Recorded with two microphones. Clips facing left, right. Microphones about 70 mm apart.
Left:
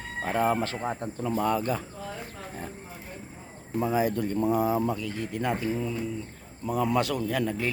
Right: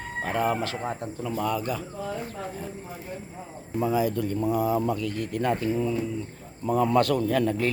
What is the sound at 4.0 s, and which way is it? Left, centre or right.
Speech, left.